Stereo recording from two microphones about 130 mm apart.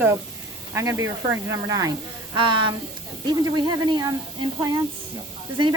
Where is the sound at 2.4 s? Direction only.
40° right (ahead or behind).